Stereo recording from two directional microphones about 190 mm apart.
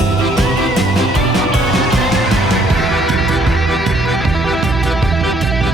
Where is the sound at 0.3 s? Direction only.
Centre (ahead or behind).